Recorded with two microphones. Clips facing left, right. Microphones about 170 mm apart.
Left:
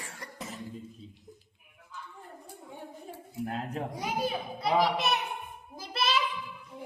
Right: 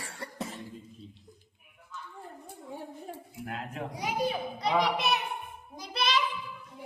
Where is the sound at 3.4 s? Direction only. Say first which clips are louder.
Left 5 dB; 35° left (ahead or behind).